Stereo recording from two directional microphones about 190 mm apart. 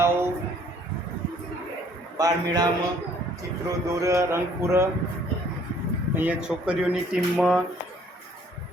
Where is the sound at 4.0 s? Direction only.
15° right (ahead or behind).